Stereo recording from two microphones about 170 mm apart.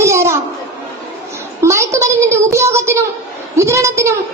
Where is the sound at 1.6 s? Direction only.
15° right (ahead or behind).